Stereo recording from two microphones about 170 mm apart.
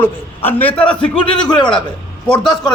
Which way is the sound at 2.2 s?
5° left (ahead or behind).